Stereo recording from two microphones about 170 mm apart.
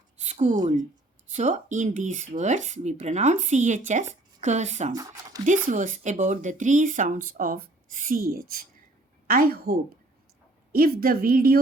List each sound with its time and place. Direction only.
0.2 s a woman's voice: 45° right (ahead or behind)
4.9 s speech: 20° right (ahead or behind)
5.5 s a woman's voice: 50° right (ahead or behind)